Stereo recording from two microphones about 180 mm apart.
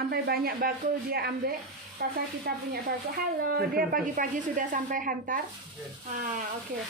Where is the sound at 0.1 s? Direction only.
60° right (ahead or behind).